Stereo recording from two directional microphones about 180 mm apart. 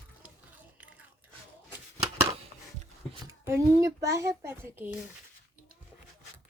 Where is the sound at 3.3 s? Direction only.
15° right (ahead or behind).